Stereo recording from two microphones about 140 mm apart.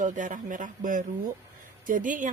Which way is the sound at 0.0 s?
65° right (ahead or behind).